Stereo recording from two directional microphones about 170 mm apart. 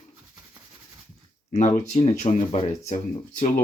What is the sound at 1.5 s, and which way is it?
Speech, 45° left (ahead or behind).